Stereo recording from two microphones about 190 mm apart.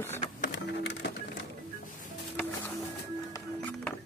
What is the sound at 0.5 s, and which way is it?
Printer, 65° left (ahead or behind).